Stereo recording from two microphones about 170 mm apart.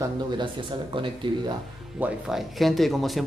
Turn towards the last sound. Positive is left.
turn(degrees=0)  # may be behind; listen again after turning